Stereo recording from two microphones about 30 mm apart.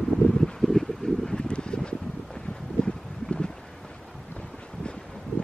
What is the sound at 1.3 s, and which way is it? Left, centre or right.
Wind, left.